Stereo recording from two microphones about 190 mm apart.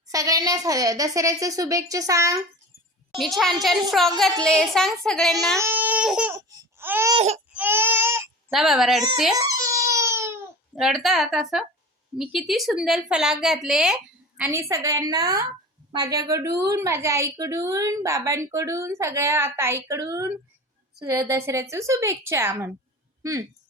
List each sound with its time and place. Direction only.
0.1 s a woman's voice: 20° right (ahead or behind)
3.2 s speech: centre (ahead or behind)
5.5 s a woman's voice: 10° right (ahead or behind)
6.5 s baby cry: 15° right (ahead or behind)
7.1 s baby cry: 30° right (ahead or behind)
7.5 s baby cry: 10° right (ahead or behind)
8.4 s speech: centre (ahead or behind)
9.4 s crying: 20° right (ahead or behind)
10.8 s a woman's voice: centre (ahead or behind)